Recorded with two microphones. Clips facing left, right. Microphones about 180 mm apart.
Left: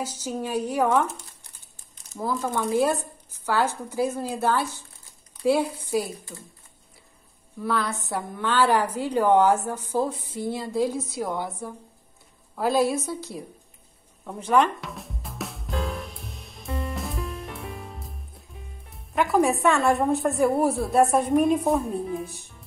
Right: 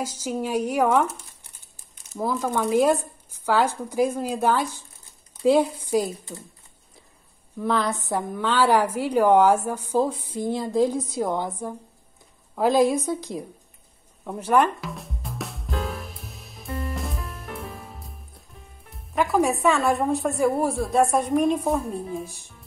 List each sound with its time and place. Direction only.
0.2 s a woman's voice: 10° right (ahead or behind)
7.6 s a woman's voice: 20° right (ahead or behind)
14.2 s drum: 10° right (ahead or behind)
18.9 s a woman's voice: centre (ahead or behind)